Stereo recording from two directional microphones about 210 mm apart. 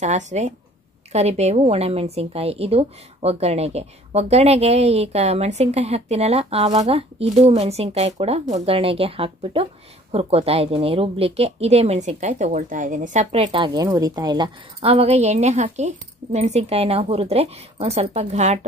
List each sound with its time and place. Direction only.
0.0 s a woman's voice: 35° right (ahead or behind)